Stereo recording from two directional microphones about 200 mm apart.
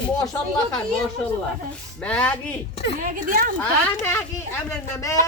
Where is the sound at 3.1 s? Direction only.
45° right (ahead or behind).